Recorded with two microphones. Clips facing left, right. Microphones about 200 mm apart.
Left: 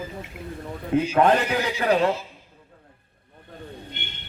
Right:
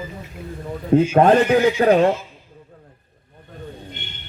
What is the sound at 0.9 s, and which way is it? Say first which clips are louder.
A man's voice: right 6 dB; 45° right (ahead or behind).